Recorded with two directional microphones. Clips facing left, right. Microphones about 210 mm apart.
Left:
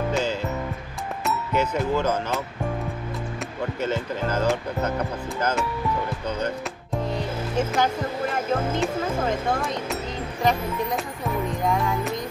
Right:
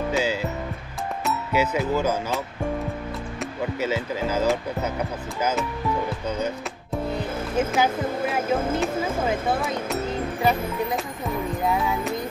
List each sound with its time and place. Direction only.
0.1 s music: 10° right (ahead or behind)
1.2 s speech: 5° right (ahead or behind)
7.5 s speech: 5° right (ahead or behind)
11.6 s speech: 5° right (ahead or behind)